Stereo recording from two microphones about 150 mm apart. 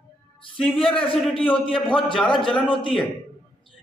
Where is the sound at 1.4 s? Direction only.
35° left (ahead or behind).